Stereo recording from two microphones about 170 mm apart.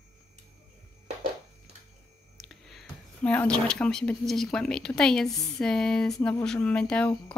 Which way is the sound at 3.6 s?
5° left (ahead or behind).